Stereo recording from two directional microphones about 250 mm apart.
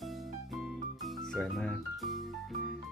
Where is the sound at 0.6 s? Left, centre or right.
Centre.